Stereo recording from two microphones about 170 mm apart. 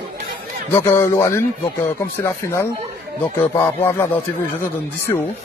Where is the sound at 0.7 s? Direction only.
10° left (ahead or behind).